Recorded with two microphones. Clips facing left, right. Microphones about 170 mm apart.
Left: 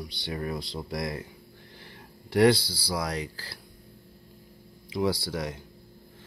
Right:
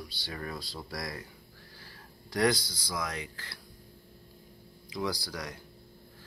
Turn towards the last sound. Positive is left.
turn(degrees=25)  # may be behind; listen again after turning